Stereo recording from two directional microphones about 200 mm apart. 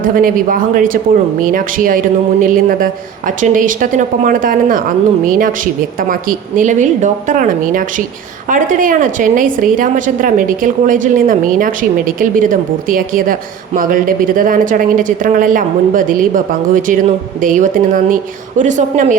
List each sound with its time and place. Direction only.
0.0 s a woman's voice: 45° right (ahead or behind)